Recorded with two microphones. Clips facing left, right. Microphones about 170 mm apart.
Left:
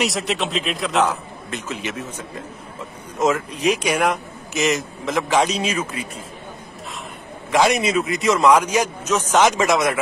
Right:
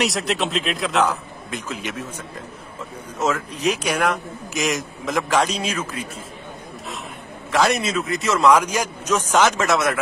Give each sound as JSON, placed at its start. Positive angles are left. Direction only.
{"t": 0.0, "sound": "a man's voice", "side_deg": 0}
{"t": 7.5, "sound": "a man's voice", "side_deg": 0}